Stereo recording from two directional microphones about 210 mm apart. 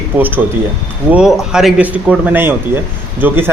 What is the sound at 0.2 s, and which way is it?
Speech, 10° right (ahead or behind).